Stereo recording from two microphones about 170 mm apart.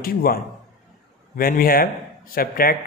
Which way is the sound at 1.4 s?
60° left (ahead or behind).